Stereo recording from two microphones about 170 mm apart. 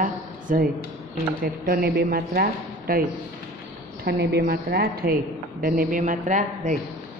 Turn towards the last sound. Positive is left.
turn(degrees=-50)  # may be behind; listen again after turning